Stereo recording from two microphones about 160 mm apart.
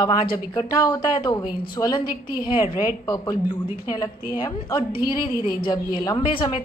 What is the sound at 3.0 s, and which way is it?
A woman's voice, 25° left (ahead or behind).